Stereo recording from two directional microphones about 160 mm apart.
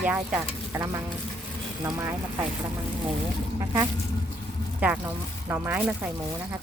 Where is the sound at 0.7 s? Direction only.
20° right (ahead or behind).